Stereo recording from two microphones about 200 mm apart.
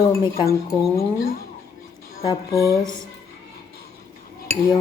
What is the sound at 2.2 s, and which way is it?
Speech, 15° left (ahead or behind).